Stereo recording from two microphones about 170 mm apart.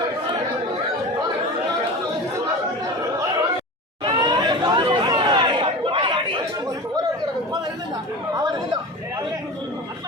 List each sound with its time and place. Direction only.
4.0 s chatter: 25° right (ahead or behind)
8.4 s chatter: 25° right (ahead or behind)